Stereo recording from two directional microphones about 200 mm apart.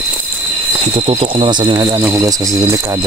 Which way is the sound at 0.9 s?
25° right (ahead or behind).